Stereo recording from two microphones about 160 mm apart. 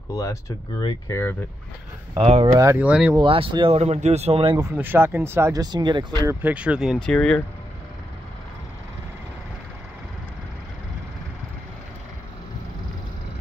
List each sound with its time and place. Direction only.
0.1 s speech: 20° left (ahead or behind)
2.1 s speech: 35° right (ahead or behind)
2.5 s speech: 15° right (ahead or behind)
3.2 s speech: 35° right (ahead or behind)
4.7 s speech: 15° right (ahead or behind)
6.4 s speech: 10° right (ahead or behind)